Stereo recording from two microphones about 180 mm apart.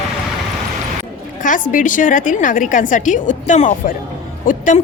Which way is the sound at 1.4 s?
45° left (ahead or behind).